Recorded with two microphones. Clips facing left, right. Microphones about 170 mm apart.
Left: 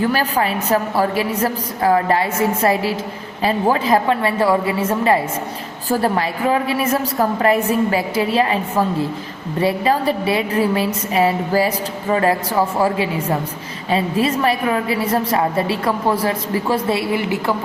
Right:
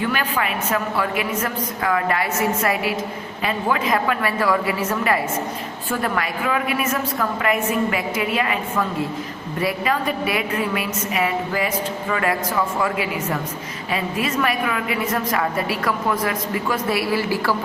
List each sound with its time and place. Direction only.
0.0 s a woman's voice: 35° left (ahead or behind)